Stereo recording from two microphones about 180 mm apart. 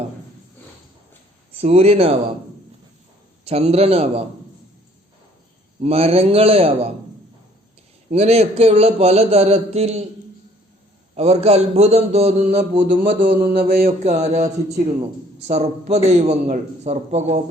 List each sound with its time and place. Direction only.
1.6 s a man's voice: 35° right (ahead or behind)
3.4 s a man's voice: 35° right (ahead or behind)
5.8 s a man's voice: 35° right (ahead or behind)
8.1 s a man's voice: 35° right (ahead or behind)
11.1 s a man's voice: 35° right (ahead or behind)
12.9 s a man's voice: 50° right (ahead or behind)
14.0 s a man's voice: 40° right (ahead or behind)